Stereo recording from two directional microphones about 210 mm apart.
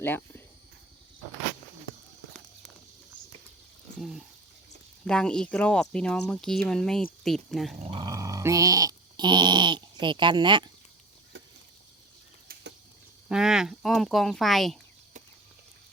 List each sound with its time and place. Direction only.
0.0 s speech: 10° left (ahead or behind)
5.0 s speech: 5° left (ahead or behind)
7.8 s dog: 25° right (ahead or behind)
13.2 s speech: 5° right (ahead or behind)